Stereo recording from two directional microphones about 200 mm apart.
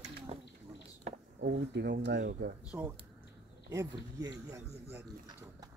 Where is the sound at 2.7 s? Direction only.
10° right (ahead or behind).